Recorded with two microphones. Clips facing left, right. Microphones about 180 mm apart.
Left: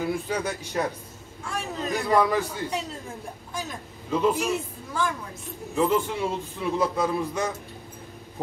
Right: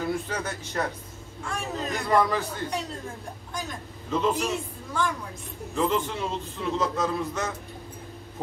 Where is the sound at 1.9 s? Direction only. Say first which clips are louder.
Left 2 dB; 10° left (ahead or behind).